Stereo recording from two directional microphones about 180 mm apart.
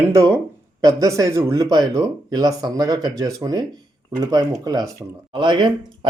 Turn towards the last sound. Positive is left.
turn(degrees=-25)  # may be behind; listen again after turning